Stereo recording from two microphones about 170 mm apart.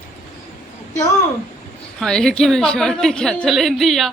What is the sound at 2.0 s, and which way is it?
A woman's voice, 5° left (ahead or behind).